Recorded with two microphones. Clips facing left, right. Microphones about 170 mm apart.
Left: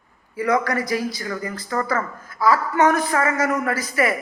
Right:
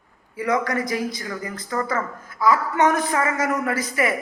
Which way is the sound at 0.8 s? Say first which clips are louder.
Left 2 dB; 25° right (ahead or behind).